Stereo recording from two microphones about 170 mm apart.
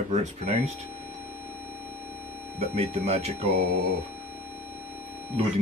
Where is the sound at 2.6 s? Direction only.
40° right (ahead or behind).